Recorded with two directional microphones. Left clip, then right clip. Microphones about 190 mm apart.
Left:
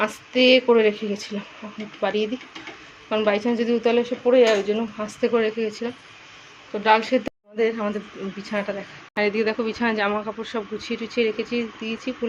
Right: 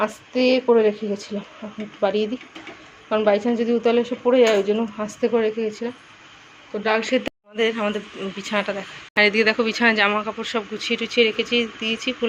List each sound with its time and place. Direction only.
0.0 s speech: 5° right (ahead or behind)
5.2 s speech: 5° right (ahead or behind)